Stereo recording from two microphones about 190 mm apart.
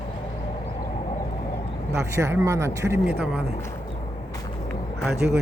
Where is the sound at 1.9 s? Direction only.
15° right (ahead or behind).